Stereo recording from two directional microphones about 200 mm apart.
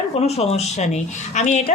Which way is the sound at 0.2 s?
30° left (ahead or behind).